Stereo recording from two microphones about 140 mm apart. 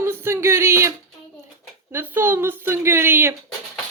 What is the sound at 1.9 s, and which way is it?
A woman's voice, 15° right (ahead or behind).